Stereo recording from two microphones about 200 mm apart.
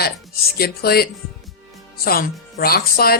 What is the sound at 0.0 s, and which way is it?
Speech, 50° left (ahead or behind).